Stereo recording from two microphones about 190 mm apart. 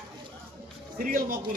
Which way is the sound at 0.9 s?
50° right (ahead or behind).